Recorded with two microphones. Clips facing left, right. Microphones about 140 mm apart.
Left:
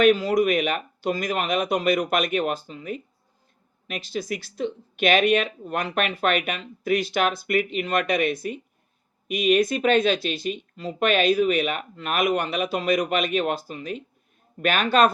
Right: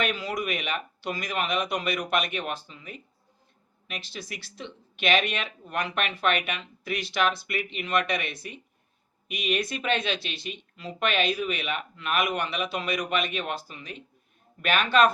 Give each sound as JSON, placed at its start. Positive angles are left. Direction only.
{"t": 0.0, "sound": "speech", "side_deg": 40}